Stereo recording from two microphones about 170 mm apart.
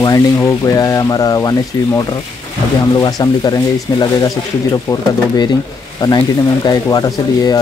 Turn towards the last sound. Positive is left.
turn(degrees=20)  # may be behind; listen again after turning